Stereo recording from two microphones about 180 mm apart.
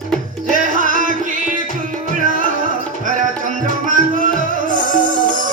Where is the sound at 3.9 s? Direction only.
45° right (ahead or behind).